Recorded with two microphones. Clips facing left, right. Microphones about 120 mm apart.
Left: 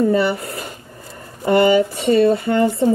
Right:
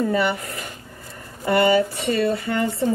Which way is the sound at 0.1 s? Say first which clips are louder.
Left 4 dB; 35° left (ahead or behind).